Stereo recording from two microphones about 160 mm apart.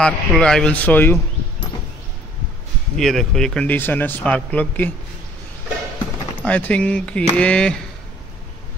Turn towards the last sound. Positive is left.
turn(degrees=5)  # may be behind; listen again after turning